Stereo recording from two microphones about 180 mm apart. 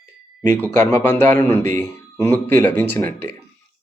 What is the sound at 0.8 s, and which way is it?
Speech, 15° left (ahead or behind).